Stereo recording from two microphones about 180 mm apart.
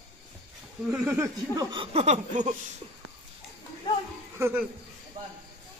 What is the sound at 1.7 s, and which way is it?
Speech, 30° right (ahead or behind).